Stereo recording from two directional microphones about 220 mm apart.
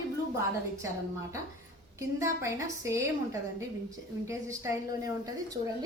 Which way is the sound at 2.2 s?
15° right (ahead or behind).